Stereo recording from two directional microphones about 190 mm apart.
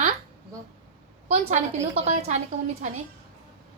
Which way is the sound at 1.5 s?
35° right (ahead or behind).